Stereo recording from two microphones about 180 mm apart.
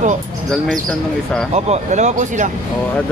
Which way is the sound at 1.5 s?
40° right (ahead or behind).